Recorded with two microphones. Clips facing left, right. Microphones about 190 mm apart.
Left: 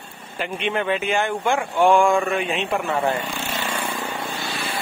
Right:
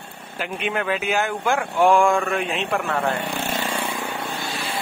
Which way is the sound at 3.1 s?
65° right (ahead or behind).